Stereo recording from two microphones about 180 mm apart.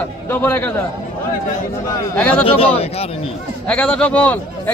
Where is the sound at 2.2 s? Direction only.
5° left (ahead or behind).